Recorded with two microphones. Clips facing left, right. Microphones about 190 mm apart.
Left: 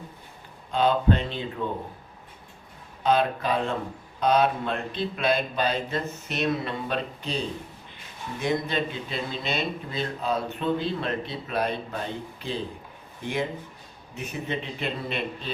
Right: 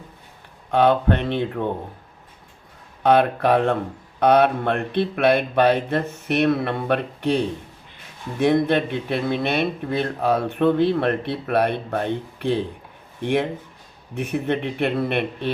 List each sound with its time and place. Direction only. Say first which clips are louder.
0.7 s speech: right 5 dB; 65° right (ahead or behind)
3.0 s speech: right 6 dB; 65° right (ahead or behind)